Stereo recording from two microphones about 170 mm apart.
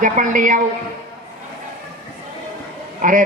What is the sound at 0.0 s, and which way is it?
Music, 50° right (ahead or behind).